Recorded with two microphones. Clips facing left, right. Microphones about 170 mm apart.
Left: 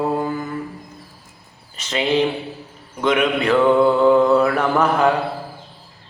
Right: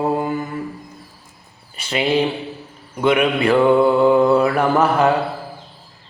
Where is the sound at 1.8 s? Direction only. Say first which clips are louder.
Right 1 dB; 10° right (ahead or behind).